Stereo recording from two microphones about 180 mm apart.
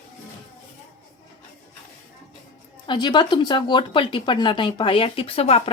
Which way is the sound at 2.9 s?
25° left (ahead or behind).